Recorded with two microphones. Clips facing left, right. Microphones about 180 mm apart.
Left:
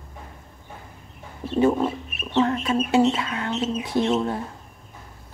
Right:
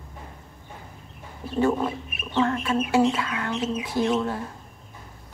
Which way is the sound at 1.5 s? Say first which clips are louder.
Left 3 dB; 20° left (ahead or behind).